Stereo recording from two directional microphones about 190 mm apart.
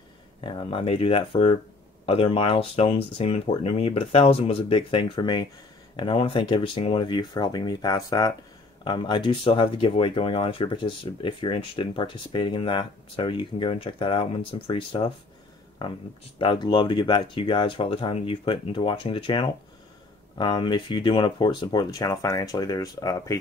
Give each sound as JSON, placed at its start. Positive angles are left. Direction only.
{"t": 0.4, "sound": "speech", "side_deg": 25}
{"t": 16.3, "sound": "speech", "side_deg": 25}